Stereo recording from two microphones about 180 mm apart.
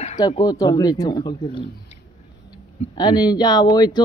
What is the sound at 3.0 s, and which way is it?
Speech, 20° left (ahead or behind).